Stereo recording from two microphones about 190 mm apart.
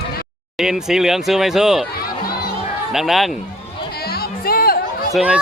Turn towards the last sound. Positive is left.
turn(degrees=-5)  # may be behind; listen again after turning